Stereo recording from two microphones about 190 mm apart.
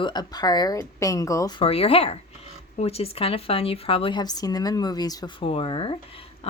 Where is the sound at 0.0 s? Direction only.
20° left (ahead or behind).